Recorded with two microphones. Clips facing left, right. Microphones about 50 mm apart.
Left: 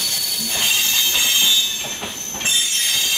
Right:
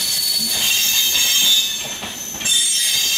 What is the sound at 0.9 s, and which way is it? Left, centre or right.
Train, left.